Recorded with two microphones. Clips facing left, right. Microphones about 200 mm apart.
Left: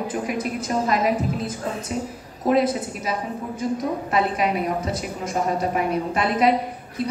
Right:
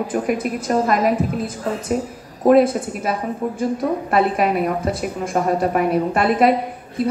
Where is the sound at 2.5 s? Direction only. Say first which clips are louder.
Right 6 dB; 50° right (ahead or behind).